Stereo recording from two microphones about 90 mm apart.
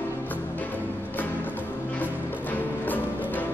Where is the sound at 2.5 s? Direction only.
20° left (ahead or behind).